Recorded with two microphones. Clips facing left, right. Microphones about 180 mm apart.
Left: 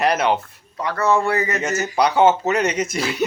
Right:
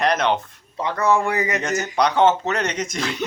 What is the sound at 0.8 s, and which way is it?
Speech, 20° right (ahead or behind).